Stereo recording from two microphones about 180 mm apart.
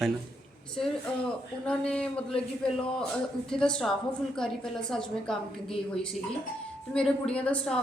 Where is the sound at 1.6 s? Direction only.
5° left (ahead or behind).